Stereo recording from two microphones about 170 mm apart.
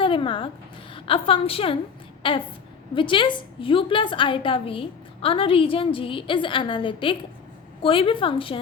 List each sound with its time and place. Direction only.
0.0 s a woman's voice: 30° left (ahead or behind)